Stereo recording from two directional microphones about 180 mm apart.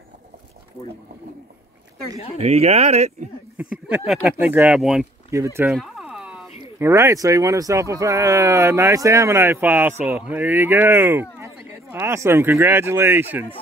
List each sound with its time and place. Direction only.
2.3 s speech: 35° right (ahead or behind)
3.7 s speech: 5° right (ahead or behind)
5.3 s speech: 15° right (ahead or behind)
5.8 s a sound: 5° right (ahead or behind)
6.8 s speech: 15° right (ahead or behind)